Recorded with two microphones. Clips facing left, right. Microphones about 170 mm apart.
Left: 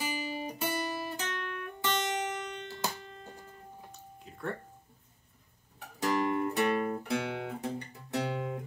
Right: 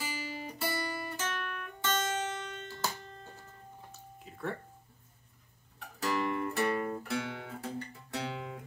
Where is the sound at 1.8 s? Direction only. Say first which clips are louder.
Left 1 dB; 15° left (ahead or behind).